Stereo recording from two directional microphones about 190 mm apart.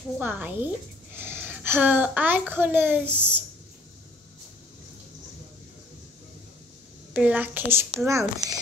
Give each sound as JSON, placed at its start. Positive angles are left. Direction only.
{"t": 0.2, "sound": "a child's voice", "side_deg": -10}
{"t": 1.1, "sound": "a sound", "side_deg": -10}
{"t": 2.5, "sound": "a child's voice", "side_deg": -10}
{"t": 7.2, "sound": "a child's voice", "side_deg": -10}